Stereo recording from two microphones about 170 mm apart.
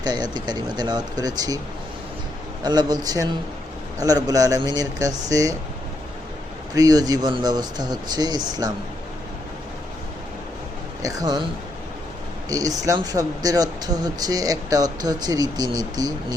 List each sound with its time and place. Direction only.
0.0 s speech: 25° right (ahead or behind)
2.6 s speech: 25° right (ahead or behind)
6.7 s speech: 20° right (ahead or behind)
11.0 s speech: 20° right (ahead or behind)
12.5 s speech: 20° right (ahead or behind)